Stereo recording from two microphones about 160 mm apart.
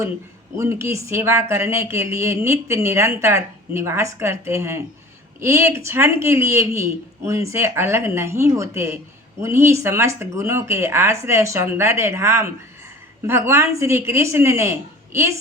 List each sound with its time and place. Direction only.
0.5 s speech: 15° right (ahead or behind)